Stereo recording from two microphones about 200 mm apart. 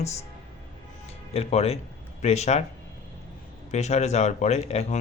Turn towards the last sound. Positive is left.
turn(degrees=35)  # may be behind; listen again after turning